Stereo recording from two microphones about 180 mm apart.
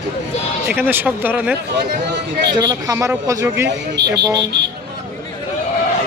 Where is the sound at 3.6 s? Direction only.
70° right (ahead or behind).